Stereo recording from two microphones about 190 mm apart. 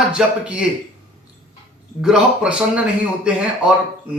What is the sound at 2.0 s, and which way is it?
Speech, 5° right (ahead or behind).